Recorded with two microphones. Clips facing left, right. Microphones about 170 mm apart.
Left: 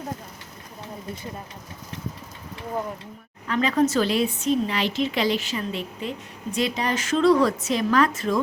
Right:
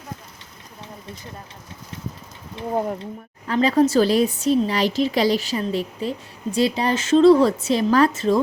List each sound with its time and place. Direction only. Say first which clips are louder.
3.4 s speech: right 4 dB; 35° right (ahead or behind)